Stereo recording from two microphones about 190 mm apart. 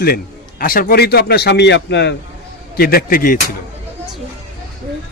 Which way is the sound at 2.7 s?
55° left (ahead or behind).